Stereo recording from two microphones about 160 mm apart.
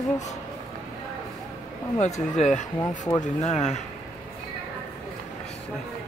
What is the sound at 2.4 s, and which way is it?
Speech, 50° left (ahead or behind).